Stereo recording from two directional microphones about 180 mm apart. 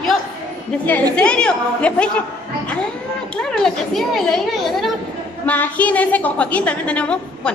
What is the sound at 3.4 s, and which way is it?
A child's voice, 5° left (ahead or behind).